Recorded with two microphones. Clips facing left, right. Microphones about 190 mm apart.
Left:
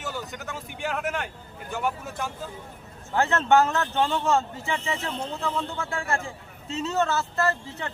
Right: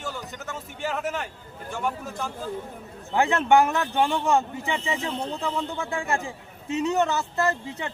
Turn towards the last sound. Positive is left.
turn(degrees=-15)  # may be behind; listen again after turning